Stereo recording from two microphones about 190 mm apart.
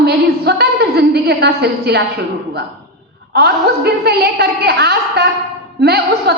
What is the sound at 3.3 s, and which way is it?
A woman's voice, 55° right (ahead or behind).